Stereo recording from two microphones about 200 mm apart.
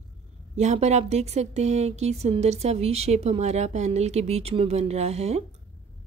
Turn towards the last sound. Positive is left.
turn(degrees=-30)  # may be behind; listen again after turning